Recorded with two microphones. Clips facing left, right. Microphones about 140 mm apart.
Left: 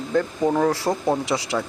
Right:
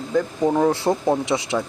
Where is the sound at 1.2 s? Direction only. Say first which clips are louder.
Right 2 dB; 20° right (ahead or behind).